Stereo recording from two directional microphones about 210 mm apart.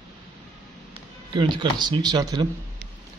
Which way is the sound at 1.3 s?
20° right (ahead or behind).